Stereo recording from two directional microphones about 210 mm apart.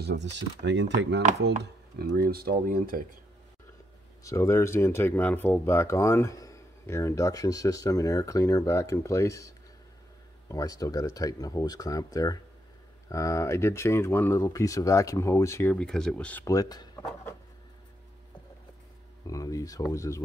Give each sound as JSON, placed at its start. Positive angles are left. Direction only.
{"t": 0.0, "sound": "speech", "side_deg": -55}
{"t": 1.6, "sound": "speech", "side_deg": -45}
{"t": 4.2, "sound": "speech", "side_deg": 15}
{"t": 10.5, "sound": "speech", "side_deg": 15}
{"t": 19.2, "sound": "speech", "side_deg": 15}